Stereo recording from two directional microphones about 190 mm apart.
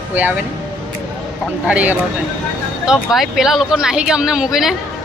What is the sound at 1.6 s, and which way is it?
Speech, 5° right (ahead or behind).